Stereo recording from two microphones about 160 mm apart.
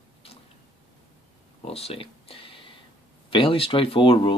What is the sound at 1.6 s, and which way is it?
Speech, 40° left (ahead or behind).